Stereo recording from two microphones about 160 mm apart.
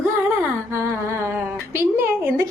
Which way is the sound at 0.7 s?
15° right (ahead or behind).